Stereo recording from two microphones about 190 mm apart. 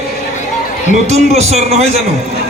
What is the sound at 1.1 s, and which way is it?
Speech, 35° right (ahead or behind).